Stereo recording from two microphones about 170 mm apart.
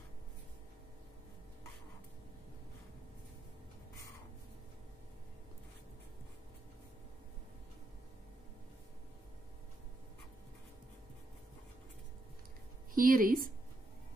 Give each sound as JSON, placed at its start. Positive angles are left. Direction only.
{"t": 12.9, "sound": "speech", "side_deg": -55}